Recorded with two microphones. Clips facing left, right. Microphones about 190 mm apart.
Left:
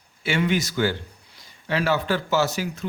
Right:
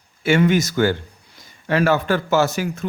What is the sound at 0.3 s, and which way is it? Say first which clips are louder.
A man's voice: right 7 dB; 45° right (ahead or behind).